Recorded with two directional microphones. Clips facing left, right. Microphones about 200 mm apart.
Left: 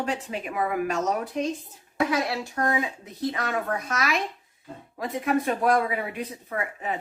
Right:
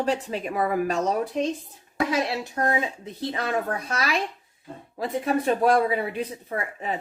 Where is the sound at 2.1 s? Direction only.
25° right (ahead or behind).